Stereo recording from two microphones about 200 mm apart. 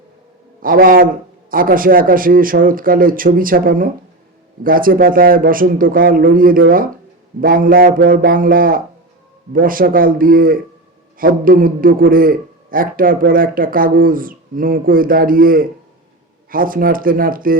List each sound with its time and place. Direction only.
0.6 s a man's voice: 45° right (ahead or behind)